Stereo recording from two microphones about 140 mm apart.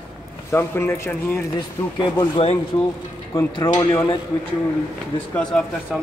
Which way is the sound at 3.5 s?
30° left (ahead or behind).